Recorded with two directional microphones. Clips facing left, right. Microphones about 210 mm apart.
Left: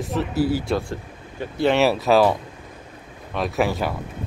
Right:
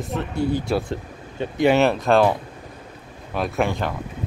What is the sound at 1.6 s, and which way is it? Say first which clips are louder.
Speech: right 1 dB; centre (ahead or behind).